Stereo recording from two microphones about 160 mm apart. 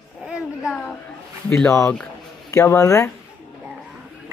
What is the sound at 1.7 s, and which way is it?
Speech, 15° left (ahead or behind).